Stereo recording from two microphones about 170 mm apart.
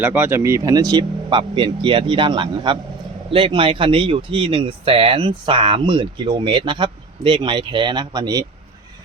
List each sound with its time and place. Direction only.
0.0 s speech: 10° right (ahead or behind)